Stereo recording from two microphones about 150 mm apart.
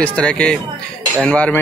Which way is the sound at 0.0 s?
5° left (ahead or behind).